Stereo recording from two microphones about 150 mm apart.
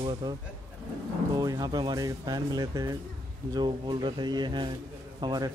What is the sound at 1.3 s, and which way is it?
A man's voice, 25° right (ahead or behind).